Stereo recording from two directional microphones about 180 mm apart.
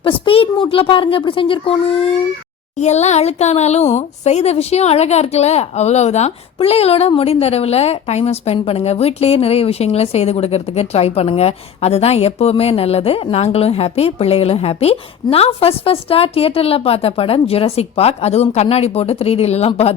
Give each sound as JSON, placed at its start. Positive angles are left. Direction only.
{"t": 0.0, "sound": "speech", "side_deg": 30}